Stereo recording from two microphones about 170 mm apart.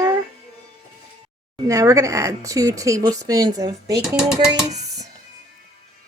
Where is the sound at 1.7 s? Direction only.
20° right (ahead or behind).